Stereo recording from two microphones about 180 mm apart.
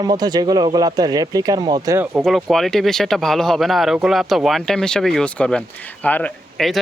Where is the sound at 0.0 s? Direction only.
20° right (ahead or behind).